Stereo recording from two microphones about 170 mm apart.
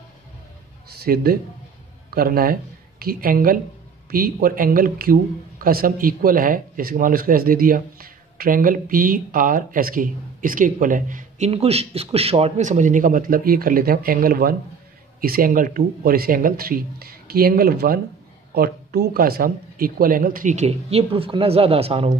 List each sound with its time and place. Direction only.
1.0 s a man's voice: 60° right (ahead or behind); by 22.1 s 35° right (ahead or behind)